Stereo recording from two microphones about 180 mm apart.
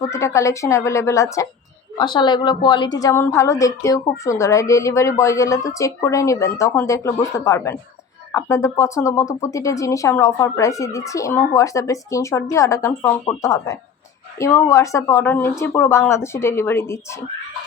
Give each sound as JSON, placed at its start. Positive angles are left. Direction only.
{"t": 0.0, "sound": "a woman's voice", "side_deg": 15}